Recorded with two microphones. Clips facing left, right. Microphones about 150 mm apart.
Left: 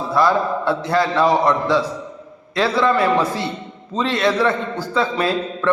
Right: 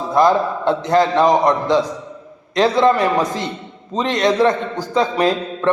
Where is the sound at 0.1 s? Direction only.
20° right (ahead or behind).